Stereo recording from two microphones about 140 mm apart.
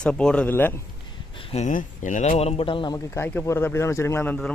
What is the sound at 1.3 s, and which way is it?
Speech, 45° left (ahead or behind).